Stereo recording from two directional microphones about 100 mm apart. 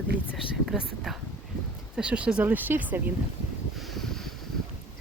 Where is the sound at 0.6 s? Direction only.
Centre (ahead or behind); by 3.0 s 20° right (ahead or behind).